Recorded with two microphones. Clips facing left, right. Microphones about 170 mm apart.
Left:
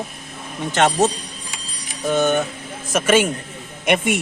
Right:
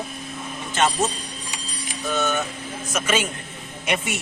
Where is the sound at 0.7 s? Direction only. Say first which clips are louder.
Left 5 dB; 75° left (ahead or behind).